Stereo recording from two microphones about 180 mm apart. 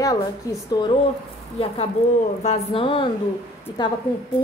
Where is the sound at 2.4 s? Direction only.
35° left (ahead or behind).